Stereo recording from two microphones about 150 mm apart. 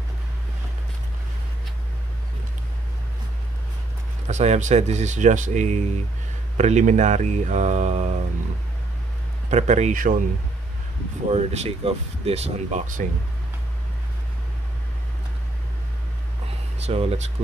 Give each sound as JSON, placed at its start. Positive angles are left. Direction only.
{"t": 4.3, "sound": "speech", "side_deg": -50}
{"t": 9.5, "sound": "speech", "side_deg": -50}
{"t": 11.2, "sound": "speech", "side_deg": -45}
{"t": 16.7, "sound": "speech", "side_deg": -45}